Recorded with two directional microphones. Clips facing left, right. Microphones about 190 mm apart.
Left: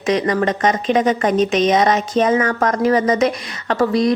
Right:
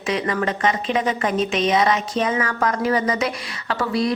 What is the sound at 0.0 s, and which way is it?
Speech, 40° left (ahead or behind).